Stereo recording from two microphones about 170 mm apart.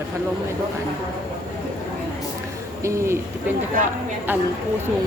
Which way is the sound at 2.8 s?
15° right (ahead or behind).